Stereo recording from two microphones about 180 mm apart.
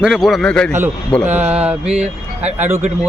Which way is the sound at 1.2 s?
10° right (ahead or behind).